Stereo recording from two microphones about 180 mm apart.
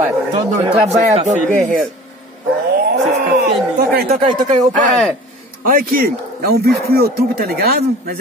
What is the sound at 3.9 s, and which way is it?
Speech, 60° right (ahead or behind).